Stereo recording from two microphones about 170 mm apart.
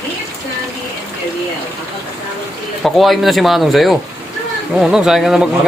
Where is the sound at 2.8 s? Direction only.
Centre (ahead or behind).